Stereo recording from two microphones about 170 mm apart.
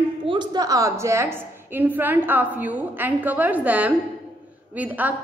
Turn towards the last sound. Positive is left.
turn(degrees=-10)  # may be behind; listen again after turning